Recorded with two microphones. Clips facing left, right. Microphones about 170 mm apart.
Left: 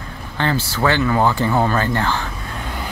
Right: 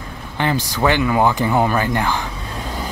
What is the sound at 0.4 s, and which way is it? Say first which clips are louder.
Speech: right 1 dB; 15° right (ahead or behind).